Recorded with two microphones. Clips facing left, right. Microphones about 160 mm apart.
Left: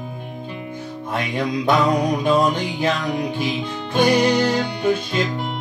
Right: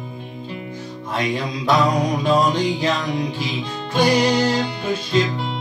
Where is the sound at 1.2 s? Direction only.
55° left (ahead or behind).